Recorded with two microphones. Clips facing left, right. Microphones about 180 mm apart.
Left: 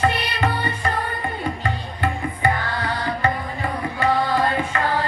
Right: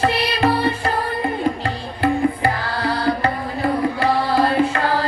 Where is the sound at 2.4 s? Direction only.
35° right (ahead or behind).